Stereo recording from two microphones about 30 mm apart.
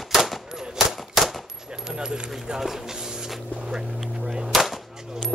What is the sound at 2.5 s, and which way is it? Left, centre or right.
Speech, centre.